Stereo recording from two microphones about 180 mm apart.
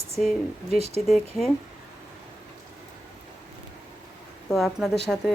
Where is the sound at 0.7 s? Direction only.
35° right (ahead or behind).